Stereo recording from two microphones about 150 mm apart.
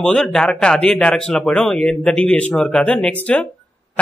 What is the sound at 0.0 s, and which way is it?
A man's voice, 5° left (ahead or behind).